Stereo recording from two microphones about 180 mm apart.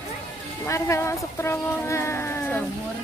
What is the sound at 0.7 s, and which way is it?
Speech, 15° left (ahead or behind).